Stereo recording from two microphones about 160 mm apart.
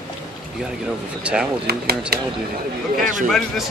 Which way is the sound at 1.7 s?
75° right (ahead or behind).